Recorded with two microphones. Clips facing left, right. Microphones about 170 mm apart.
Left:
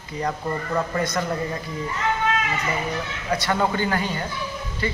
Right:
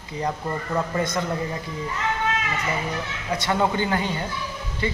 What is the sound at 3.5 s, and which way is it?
Speech, 15° right (ahead or behind).